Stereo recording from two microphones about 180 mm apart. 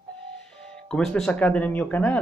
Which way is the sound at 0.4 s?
5° left (ahead or behind).